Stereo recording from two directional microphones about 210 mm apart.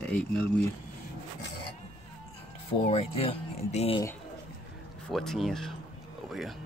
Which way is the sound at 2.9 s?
30° left (ahead or behind).